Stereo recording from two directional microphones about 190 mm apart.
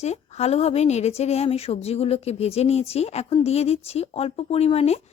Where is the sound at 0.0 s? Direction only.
35° left (ahead or behind).